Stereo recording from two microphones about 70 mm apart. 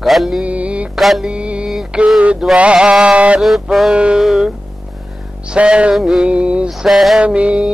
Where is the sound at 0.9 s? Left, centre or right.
Centre.